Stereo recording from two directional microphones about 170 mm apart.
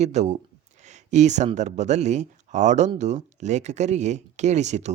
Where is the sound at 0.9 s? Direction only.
45° right (ahead or behind).